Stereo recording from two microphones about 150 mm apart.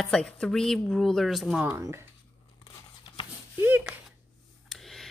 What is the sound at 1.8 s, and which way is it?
Speech, 20° right (ahead or behind).